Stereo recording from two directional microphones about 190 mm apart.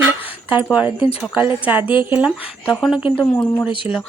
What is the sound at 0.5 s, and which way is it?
A woman's voice, 10° right (ahead or behind).